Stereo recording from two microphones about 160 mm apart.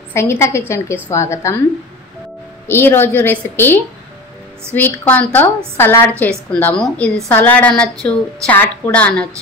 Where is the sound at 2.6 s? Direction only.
15° left (ahead or behind).